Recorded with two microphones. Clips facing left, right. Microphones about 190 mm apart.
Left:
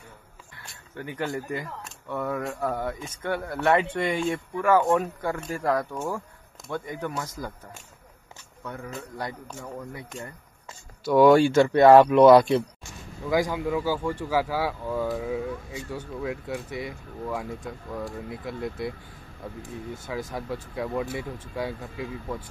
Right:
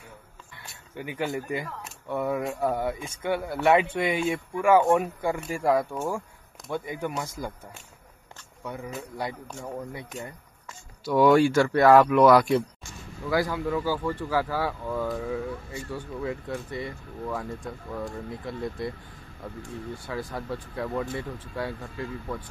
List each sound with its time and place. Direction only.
0.9 s speech: 10° right (ahead or behind)
11.1 s speech: 55° left (ahead or behind)
11.3 s speech: 25° left (ahead or behind)
13.2 s speech: 15° left (ahead or behind)